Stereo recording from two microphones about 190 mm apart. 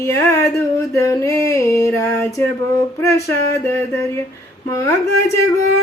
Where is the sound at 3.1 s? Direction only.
15° left (ahead or behind).